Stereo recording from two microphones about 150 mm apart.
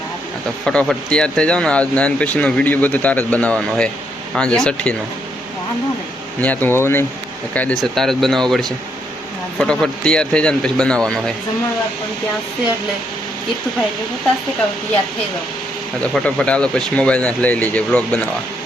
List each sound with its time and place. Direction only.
0.6 s speech: 5° left (ahead or behind)
6.4 s speech: 10° left (ahead or behind)
16.0 s speech: 5° left (ahead or behind)